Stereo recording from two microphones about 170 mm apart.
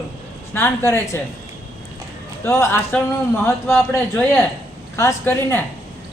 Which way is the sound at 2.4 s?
15° left (ahead or behind).